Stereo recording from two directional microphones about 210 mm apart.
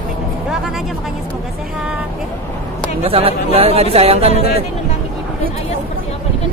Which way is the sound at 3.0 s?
25° right (ahead or behind).